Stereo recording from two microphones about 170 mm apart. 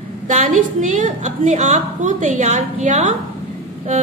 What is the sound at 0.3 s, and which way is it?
A woman's voice, 50° right (ahead or behind).